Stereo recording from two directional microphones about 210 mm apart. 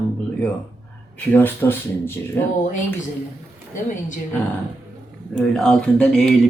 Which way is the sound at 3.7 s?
35° left (ahead or behind).